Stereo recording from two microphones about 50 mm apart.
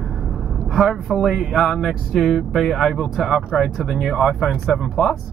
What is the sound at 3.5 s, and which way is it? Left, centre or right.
Speech, centre.